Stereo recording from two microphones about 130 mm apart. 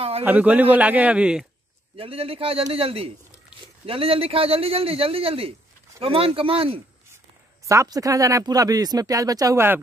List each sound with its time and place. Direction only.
0.2 s speech: 15° right (ahead or behind)
2.0 s a man's voice: 45° right (ahead or behind)
7.6 s speech: 25° right (ahead or behind)